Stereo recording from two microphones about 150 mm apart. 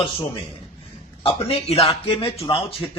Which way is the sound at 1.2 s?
40° left (ahead or behind).